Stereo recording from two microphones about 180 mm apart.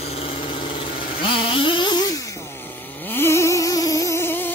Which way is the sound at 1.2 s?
30° left (ahead or behind).